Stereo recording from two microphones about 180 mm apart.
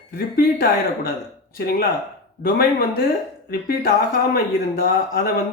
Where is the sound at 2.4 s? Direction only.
55° left (ahead or behind).